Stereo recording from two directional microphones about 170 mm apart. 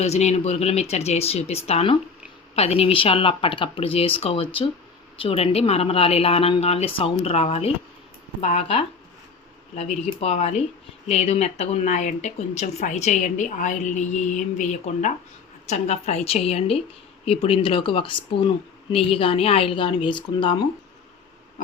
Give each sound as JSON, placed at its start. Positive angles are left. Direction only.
{"t": 0.0, "sound": "speech", "side_deg": 40}